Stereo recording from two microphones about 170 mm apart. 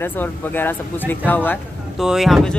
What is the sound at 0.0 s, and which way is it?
Speech, 10° left (ahead or behind).